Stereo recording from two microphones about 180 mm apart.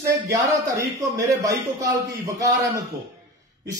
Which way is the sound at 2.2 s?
20° right (ahead or behind).